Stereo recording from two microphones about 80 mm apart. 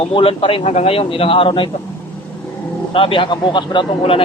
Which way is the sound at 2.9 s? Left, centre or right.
Left.